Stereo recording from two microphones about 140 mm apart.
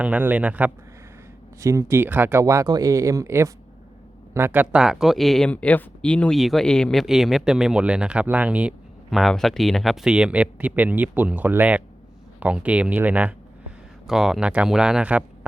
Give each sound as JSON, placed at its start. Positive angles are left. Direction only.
{"t": 0.0, "sound": "speech", "side_deg": -10}
{"t": 1.6, "sound": "speech", "side_deg": -20}